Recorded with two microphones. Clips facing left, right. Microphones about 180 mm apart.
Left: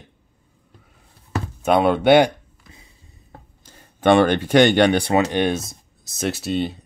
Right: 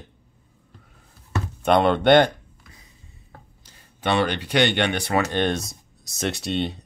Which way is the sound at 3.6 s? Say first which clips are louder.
Left 8 dB; 50° left (ahead or behind).